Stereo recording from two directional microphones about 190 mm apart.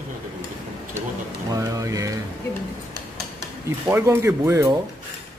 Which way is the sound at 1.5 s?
15° right (ahead or behind).